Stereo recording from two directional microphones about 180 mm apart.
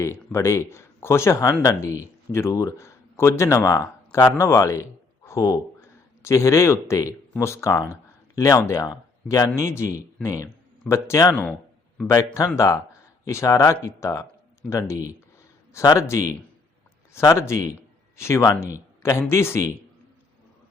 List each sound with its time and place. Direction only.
0.0 s a man's voice: 15° left (ahead or behind)